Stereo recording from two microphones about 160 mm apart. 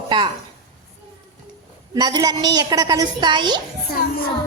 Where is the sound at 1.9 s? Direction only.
25° right (ahead or behind).